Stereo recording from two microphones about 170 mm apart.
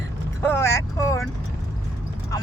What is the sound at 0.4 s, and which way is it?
Vehicle, 15° left (ahead or behind).